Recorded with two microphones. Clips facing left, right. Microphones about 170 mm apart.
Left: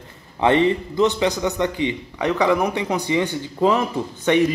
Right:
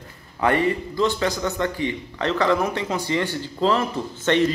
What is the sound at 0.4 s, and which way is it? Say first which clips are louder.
A man's voice: left 4 dB; 20° left (ahead or behind).